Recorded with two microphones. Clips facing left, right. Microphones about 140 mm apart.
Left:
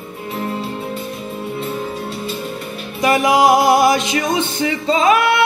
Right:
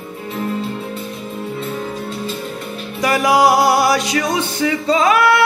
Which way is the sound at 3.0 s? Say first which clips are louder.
Left 1 dB; 25° left (ahead or behind).